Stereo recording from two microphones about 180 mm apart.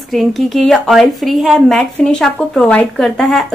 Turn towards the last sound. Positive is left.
turn(degrees=0)  # may be behind; listen again after turning